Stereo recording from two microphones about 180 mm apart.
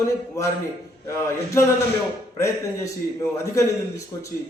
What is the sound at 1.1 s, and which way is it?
A man's voice, 15° left (ahead or behind).